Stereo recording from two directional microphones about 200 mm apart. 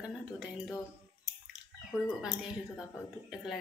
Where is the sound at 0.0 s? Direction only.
5° right (ahead or behind).